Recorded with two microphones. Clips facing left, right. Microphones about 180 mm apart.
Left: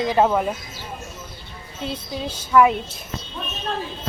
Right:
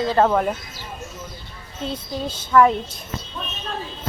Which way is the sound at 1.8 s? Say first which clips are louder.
Right 1 dB; 10° left (ahead or behind).